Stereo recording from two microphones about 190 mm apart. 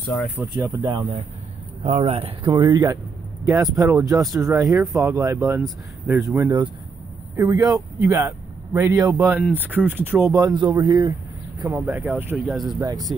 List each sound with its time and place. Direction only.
0.0 s speech: 10° left (ahead or behind)
0.4 s speech: 15° right (ahead or behind)
1.8 s speech: 35° right (ahead or behind)
2.5 s speech: 20° right (ahead or behind)
10.3 s speech: 20° right (ahead or behind)